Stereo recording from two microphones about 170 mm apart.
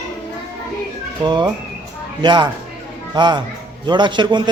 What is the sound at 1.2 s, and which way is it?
A man's voice, 25° right (ahead or behind).